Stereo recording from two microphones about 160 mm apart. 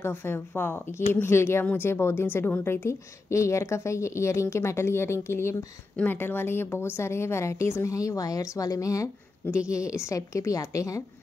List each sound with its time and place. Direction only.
0.0 s a woman's voice: 15° left (ahead or behind)